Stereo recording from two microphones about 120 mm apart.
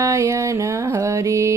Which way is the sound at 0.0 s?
25° right (ahead or behind).